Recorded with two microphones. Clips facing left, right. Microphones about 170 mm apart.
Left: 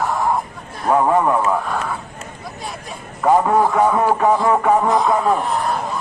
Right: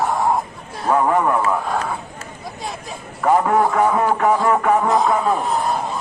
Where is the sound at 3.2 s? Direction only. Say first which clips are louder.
Left 1 dB; centre (ahead or behind).